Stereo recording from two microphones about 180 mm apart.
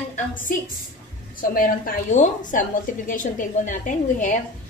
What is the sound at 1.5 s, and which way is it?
A woman's voice, 45° left (ahead or behind).